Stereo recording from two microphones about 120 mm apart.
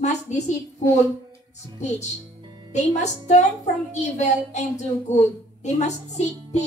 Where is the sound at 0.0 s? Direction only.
75° left (ahead or behind).